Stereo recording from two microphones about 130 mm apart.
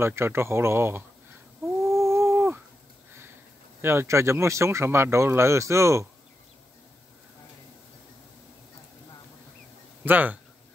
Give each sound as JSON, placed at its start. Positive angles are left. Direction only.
{"t": 0.0, "sound": "speech", "side_deg": -20}
{"t": 1.9, "sound": "a sound", "side_deg": -20}
{"t": 3.8, "sound": "speech", "side_deg": -20}
{"t": 10.0, "sound": "speech", "side_deg": -10}